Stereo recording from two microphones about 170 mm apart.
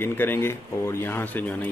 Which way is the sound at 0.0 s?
15° left (ahead or behind).